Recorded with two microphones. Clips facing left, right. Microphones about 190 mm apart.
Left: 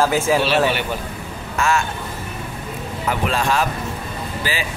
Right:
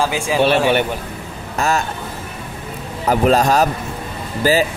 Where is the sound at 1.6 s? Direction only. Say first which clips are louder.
Right 1 dB; 35° right (ahead or behind).